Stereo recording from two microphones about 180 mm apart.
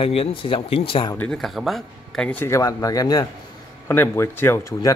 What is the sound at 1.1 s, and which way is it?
Speech, 5° left (ahead or behind).